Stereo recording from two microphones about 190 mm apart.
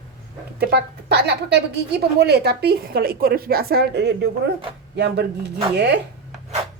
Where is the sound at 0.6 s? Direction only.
60° right (ahead or behind).